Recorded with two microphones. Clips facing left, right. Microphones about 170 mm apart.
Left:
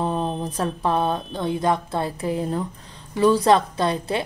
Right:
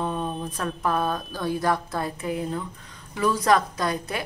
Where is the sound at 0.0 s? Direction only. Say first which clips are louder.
Left 4 dB; 30° left (ahead or behind).